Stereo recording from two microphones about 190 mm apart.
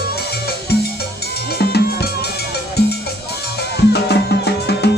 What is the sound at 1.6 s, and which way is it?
Music, 55° left (ahead or behind).